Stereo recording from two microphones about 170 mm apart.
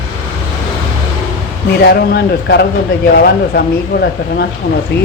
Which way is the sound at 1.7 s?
65° left (ahead or behind).